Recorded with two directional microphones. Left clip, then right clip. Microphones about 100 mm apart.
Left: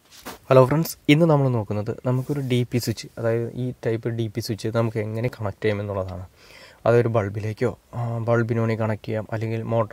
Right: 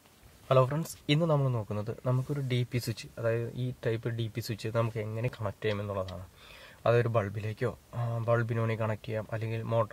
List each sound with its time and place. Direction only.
0.6 s speech: 80° left
1.5 s speech: 60° left (ahead or behind)
4.9 s speech: 60° left (ahead or behind)
6.8 s speech: 50° left (ahead or behind)
7.9 s speech: 25° left (ahead or behind)
8.3 s speech: 50° left (ahead or behind)